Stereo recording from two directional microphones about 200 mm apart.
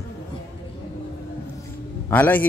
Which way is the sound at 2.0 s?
10° left (ahead or behind).